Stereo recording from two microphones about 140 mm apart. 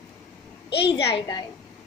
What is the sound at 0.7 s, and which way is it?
Speech, 40° left (ahead or behind).